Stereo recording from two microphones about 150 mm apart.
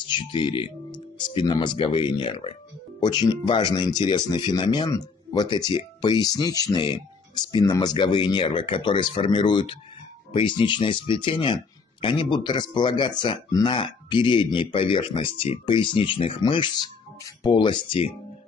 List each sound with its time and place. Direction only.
0.1 s speech: 30° left (ahead or behind)